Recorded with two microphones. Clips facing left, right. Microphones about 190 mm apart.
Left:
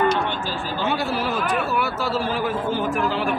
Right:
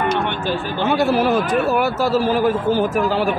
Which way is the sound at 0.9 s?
50° right (ahead or behind).